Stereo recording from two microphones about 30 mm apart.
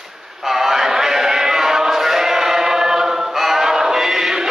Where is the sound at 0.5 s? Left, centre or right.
Centre.